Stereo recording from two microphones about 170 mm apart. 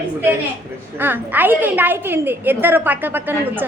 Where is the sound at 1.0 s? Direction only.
10° right (ahead or behind).